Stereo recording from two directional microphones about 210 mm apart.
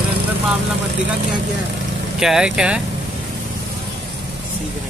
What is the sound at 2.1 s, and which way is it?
Speech, 5° right (ahead or behind).